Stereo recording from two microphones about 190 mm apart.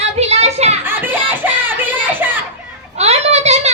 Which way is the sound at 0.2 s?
35° right (ahead or behind).